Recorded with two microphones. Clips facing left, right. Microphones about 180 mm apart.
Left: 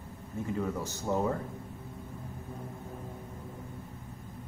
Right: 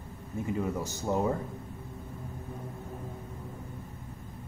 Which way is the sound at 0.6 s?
15° right (ahead or behind).